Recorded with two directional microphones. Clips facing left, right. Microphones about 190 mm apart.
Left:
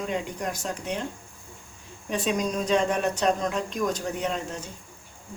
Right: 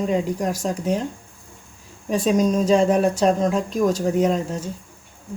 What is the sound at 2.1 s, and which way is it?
Speech, 40° right (ahead or behind).